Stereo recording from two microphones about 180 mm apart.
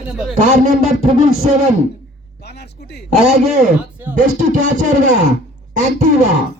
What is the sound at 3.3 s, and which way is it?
Speech, 40° right (ahead or behind).